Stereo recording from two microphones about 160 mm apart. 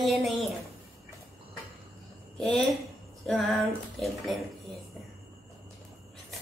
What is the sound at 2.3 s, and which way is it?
A woman's voice, 5° left (ahead or behind).